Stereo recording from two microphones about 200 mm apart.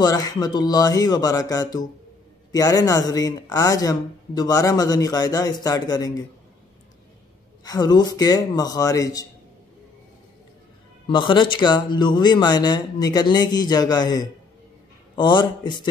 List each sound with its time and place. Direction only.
0.0 s speech: 20° left (ahead or behind)
7.6 s a man's voice: 20° left (ahead or behind)
11.1 s speech: 25° left (ahead or behind)